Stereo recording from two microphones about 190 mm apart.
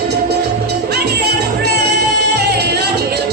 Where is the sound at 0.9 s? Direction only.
60° right (ahead or behind).